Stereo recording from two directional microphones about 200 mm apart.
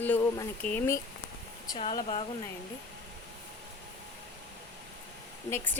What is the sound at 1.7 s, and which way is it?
Speech, 25° left (ahead or behind).